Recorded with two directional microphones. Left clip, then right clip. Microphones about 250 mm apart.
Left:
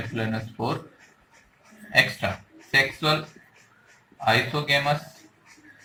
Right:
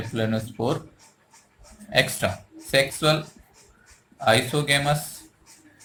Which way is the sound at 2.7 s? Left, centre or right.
Centre.